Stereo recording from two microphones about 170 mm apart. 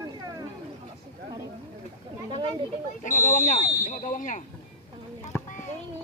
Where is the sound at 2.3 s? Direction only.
30° right (ahead or behind).